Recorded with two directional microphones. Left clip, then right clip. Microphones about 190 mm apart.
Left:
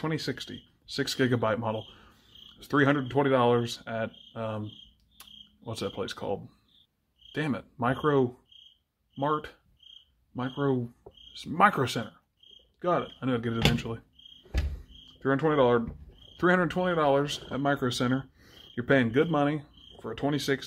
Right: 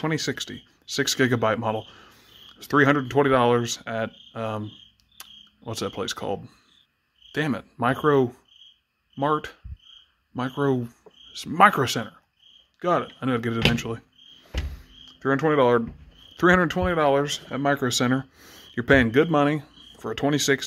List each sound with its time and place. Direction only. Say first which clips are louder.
0.0 s speech: right 6 dB; 30° right (ahead or behind)
0.8 s cricket: right 6 dB; 30° right (ahead or behind)
5.6 s speech: right 4 dB; 30° right (ahead or behind)
15.0 s speech: right 4 dB; 20° right (ahead or behind)